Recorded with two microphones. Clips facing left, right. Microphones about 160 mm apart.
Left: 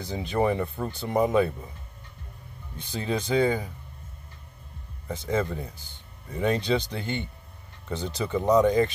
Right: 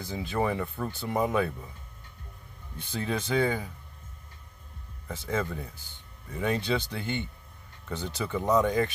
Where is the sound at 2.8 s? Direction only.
20° left (ahead or behind).